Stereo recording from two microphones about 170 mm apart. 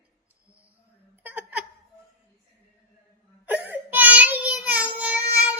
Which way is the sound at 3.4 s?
10° right (ahead or behind).